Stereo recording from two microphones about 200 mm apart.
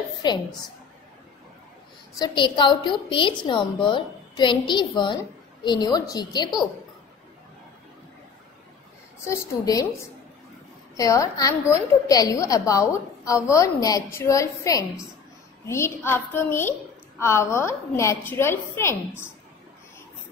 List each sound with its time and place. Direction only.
0.2 s a woman's voice: 20° left (ahead or behind)
2.1 s a woman's voice: 20° left (ahead or behind)
9.2 s a woman's voice: 15° left (ahead or behind)
11.0 s a woman's voice: 15° left (ahead or behind)